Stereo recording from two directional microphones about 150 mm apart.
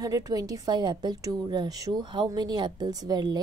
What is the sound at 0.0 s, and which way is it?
A woman's voice, 25° right (ahead or behind).